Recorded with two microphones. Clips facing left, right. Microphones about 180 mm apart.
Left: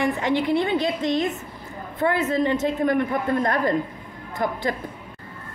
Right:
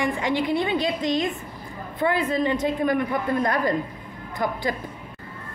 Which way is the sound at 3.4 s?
50° left (ahead or behind).